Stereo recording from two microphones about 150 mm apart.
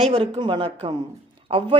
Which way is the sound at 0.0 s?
35° right (ahead or behind).